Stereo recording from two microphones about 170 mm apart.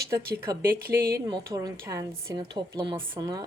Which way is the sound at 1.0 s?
65° right (ahead or behind).